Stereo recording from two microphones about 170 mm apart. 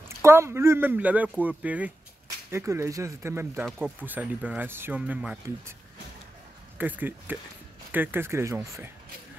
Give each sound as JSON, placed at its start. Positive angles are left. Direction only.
{"t": 0.2, "sound": "speech", "side_deg": -15}
{"t": 6.8, "sound": "speech", "side_deg": -10}